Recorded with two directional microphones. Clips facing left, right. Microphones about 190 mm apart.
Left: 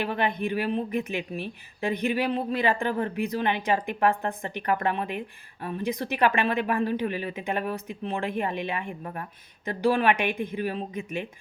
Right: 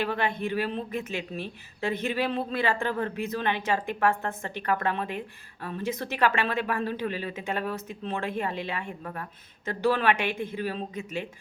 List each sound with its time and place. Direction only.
0.0 s a woman's voice: 15° left (ahead or behind)